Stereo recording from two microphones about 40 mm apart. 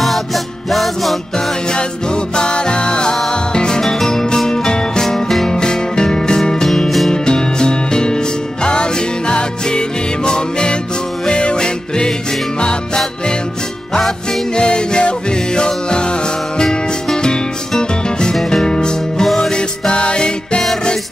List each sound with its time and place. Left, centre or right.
0.0 s music: centre
2.3 s music: left
3.8 s music: centre
9.3 s music: left
14.5 s music: left
18.3 s music: centre
18.6 s music: centre
19.2 s music: centre
19.9 s music: left